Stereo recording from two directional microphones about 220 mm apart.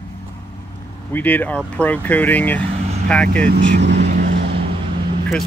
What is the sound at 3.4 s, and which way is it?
Speech, 45° right (ahead or behind).